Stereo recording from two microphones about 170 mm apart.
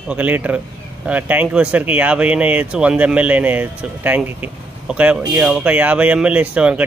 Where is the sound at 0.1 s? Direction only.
10° right (ahead or behind).